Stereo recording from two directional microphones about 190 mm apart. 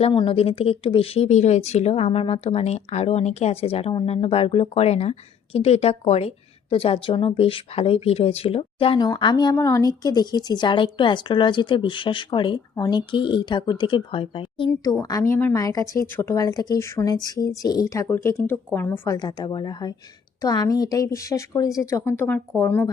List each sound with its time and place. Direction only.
0.0 s a woman's voice: 25° left (ahead or behind)
14.7 s a woman's voice: 15° left (ahead or behind)